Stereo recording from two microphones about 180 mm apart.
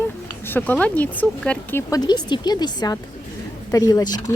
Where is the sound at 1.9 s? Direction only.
25° left (ahead or behind).